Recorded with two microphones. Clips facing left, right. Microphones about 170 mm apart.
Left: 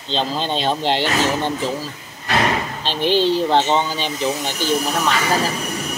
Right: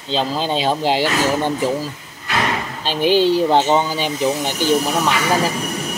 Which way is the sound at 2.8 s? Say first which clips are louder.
Right 3 dB; 10° right (ahead or behind).